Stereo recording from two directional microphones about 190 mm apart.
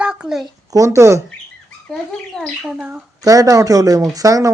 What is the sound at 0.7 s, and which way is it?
Speech, 15° right (ahead or behind).